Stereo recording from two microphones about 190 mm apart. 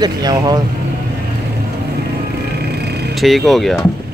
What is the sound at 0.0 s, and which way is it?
Speech, 20° right (ahead or behind).